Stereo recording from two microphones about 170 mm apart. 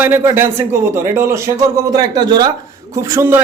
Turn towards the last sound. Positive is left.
turn(degrees=-15)  # may be behind; listen again after turning